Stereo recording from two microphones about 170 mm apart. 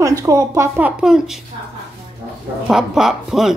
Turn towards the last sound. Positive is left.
turn(degrees=0)  # may be behind; listen again after turning